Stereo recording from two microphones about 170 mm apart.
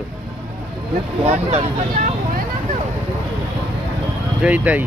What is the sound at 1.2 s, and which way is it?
Speech, 40° right (ahead or behind).